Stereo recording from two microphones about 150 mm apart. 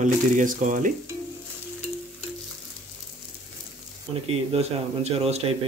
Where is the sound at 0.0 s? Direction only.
60° right (ahead or behind).